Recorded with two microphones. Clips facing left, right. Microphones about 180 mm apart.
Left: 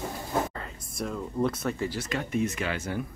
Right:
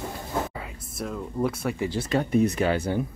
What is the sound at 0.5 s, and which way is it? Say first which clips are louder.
Speech: right 2 dB; 5° right (ahead or behind).